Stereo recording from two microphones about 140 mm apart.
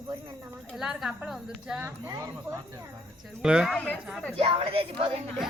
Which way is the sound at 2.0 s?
25° right (ahead or behind).